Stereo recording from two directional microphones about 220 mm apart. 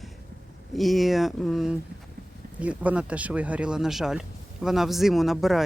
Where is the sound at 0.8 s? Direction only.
Centre (ahead or behind).